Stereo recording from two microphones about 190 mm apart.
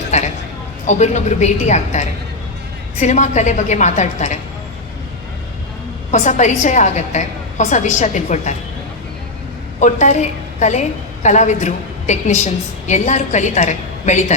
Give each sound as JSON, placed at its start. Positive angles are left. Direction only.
{"t": 0.1, "sound": "a woman's voice", "side_deg": 35}
{"t": 6.1, "sound": "a woman's voice", "side_deg": 40}
{"t": 9.8, "sound": "a woman's voice", "side_deg": 40}